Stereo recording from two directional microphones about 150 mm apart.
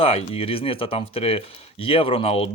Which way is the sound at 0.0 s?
40° left (ahead or behind).